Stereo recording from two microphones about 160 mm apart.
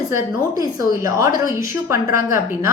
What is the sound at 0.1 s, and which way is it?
A woman's voice, 20° right (ahead or behind).